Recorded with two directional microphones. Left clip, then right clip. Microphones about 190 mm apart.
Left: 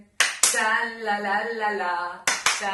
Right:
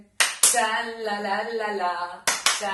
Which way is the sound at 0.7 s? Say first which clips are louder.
Left 3 dB; 10° right (ahead or behind).